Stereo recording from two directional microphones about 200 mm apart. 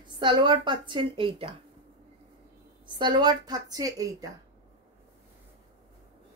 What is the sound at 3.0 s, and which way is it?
A woman's voice, 20° right (ahead or behind).